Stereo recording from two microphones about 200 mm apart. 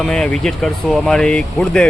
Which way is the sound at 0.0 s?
5° left (ahead or behind).